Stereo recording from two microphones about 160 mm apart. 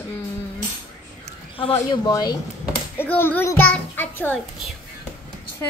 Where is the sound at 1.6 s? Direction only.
35° left (ahead or behind).